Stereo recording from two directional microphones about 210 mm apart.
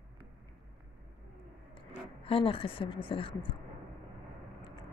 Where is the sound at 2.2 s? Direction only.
25° left (ahead or behind).